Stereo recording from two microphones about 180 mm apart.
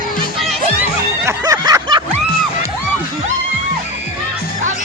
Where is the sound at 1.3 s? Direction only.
20° right (ahead or behind).